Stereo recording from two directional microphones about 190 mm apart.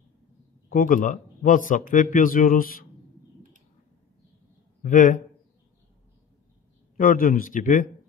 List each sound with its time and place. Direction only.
0.7 s speech: 45° left (ahead or behind)
4.8 s speech: 40° left (ahead or behind)
7.0 s speech: 45° left (ahead or behind)